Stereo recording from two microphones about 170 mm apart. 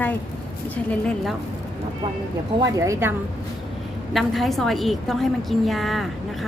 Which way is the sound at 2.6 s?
15° right (ahead or behind).